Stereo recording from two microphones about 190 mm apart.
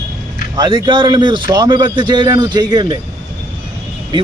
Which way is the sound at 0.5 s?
20° right (ahead or behind).